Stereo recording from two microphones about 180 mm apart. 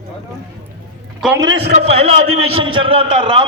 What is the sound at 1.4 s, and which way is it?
Speech, 25° right (ahead or behind).